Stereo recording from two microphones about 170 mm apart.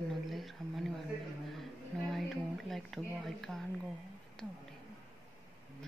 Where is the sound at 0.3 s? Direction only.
Centre (ahead or behind).